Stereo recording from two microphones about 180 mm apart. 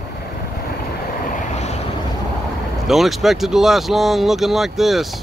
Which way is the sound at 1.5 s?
40° left (ahead or behind).